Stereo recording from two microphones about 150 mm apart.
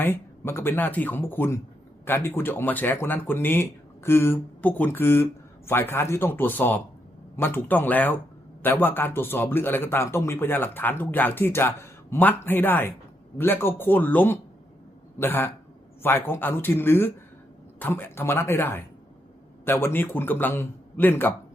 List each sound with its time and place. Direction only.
0.0 s speech: 15° left (ahead or behind)